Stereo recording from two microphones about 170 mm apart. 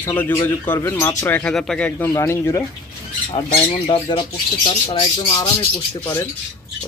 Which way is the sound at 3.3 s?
30° left (ahead or behind).